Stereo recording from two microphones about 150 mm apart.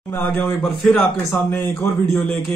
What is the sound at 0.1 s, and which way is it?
Speech, 5° left (ahead or behind).